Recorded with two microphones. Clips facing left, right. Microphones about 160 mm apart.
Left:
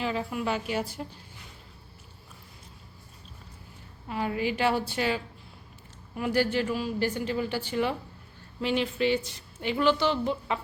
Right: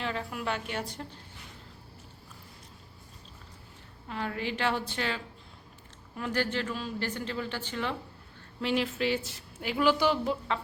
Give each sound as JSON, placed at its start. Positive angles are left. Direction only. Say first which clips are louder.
{"t": 0.0, "sound": "a woman's voice", "louder": "left 4 dB", "side_deg": 5}
{"t": 4.1, "sound": "a woman's voice", "louder": "left 5 dB", "side_deg": 10}
{"t": 8.6, "sound": "a woman's voice", "louder": "left 2 dB", "side_deg": 0}